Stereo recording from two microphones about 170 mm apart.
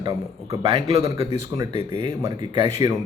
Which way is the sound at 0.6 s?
35° right (ahead or behind).